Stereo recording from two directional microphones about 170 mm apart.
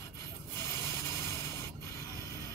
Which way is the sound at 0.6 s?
15° left (ahead or behind).